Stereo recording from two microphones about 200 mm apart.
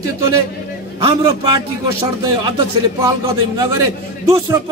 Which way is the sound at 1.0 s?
20° right (ahead or behind).